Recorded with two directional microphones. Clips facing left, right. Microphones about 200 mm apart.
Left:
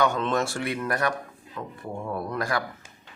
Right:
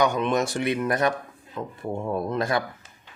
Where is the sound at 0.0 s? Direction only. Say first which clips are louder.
Right 2 dB; 15° right (ahead or behind).